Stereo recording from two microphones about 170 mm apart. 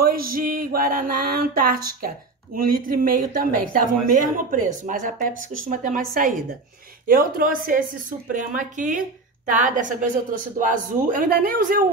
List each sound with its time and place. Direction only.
0.0 s speech: 60° right (ahead or behind)